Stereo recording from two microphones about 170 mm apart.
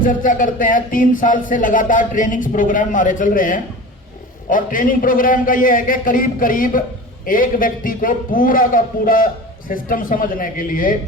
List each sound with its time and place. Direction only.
0.0 s a man's voice: 55° left (ahead or behind)